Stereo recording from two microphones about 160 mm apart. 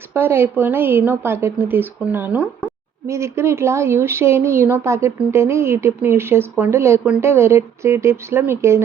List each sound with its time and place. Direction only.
0.1 s speech: 15° right (ahead or behind)